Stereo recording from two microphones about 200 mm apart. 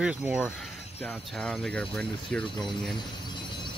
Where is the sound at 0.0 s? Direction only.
5° right (ahead or behind).